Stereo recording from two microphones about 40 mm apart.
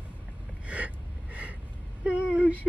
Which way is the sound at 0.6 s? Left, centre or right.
Right.